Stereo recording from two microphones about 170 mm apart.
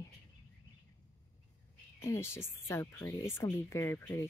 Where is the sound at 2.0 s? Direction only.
15° left (ahead or behind).